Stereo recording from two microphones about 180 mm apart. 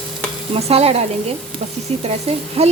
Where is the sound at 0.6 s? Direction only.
35° right (ahead or behind).